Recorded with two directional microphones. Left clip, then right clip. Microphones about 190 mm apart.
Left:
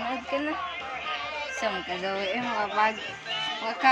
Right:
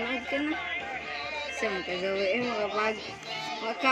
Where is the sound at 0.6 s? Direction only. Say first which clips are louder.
Left 1 dB; 35° right (ahead or behind).